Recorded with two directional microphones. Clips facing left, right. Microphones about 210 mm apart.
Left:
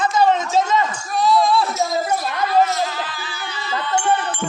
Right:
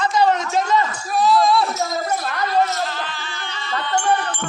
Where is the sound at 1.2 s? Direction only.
Centre (ahead or behind).